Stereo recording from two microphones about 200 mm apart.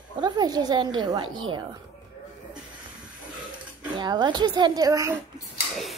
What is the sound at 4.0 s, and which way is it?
Speech, 20° right (ahead or behind).